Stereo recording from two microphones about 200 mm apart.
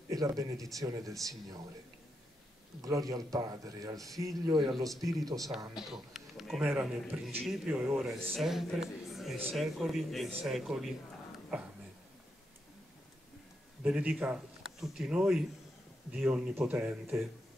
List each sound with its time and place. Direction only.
0.1 s a man's voice: 20° right (ahead or behind)
2.8 s a man's voice: 15° right (ahead or behind)
6.1 s a sound: centre (ahead or behind)
6.6 s a man's voice: 10° right (ahead or behind)
13.8 s a man's voice: 5° right (ahead or behind)